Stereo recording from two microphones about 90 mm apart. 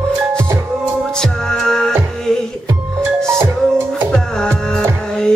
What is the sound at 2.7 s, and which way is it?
Music, 25° right (ahead or behind).